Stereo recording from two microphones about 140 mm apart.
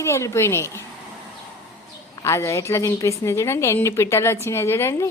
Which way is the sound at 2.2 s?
20° left (ahead or behind).